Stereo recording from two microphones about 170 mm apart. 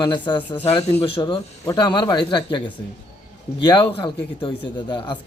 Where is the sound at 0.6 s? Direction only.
40° left (ahead or behind).